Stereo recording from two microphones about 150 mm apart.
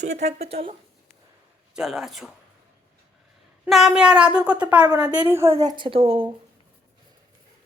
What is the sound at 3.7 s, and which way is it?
A woman's voice, centre (ahead or behind).